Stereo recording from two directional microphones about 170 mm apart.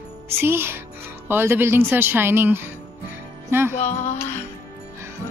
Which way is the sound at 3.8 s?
45° left (ahead or behind).